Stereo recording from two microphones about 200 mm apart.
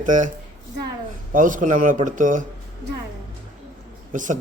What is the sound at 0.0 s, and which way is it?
Speech, 40° right (ahead or behind).